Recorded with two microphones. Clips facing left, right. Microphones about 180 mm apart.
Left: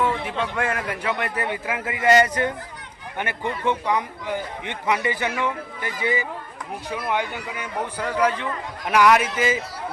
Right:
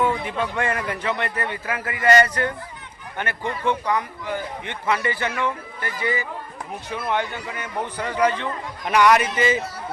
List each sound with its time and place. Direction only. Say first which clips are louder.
0.0 s a man's voice: right 1 dB; 5° right (ahead or behind)
0.5 s a man's voice: right 1 dB; 5° left (ahead or behind)